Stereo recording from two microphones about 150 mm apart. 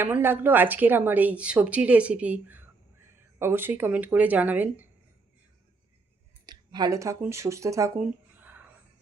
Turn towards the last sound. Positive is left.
turn(degrees=-20)  # may be behind; listen again after turning